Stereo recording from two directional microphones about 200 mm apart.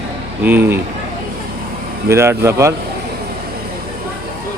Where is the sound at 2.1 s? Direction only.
15° right (ahead or behind).